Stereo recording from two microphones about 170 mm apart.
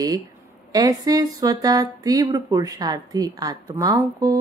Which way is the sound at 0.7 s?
20° right (ahead or behind).